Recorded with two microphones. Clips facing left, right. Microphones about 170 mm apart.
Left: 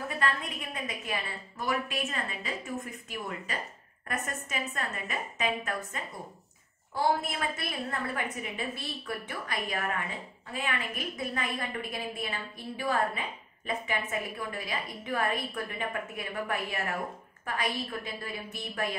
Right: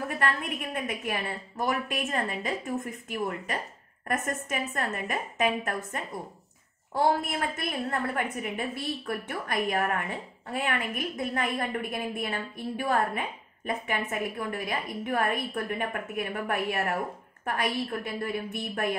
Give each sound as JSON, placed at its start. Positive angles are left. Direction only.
{"t": 0.2, "sound": "a woman's voice", "side_deg": -60}
{"t": 18.0, "sound": "speech", "side_deg": -55}